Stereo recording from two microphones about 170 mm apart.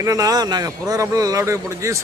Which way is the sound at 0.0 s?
20° right (ahead or behind).